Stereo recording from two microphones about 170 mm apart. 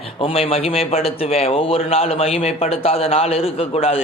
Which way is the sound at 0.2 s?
35° left (ahead or behind).